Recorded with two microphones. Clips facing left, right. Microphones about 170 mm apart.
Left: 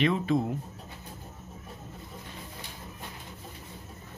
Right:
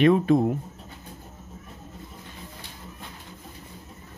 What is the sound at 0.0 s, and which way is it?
Speech, 50° right (ahead or behind).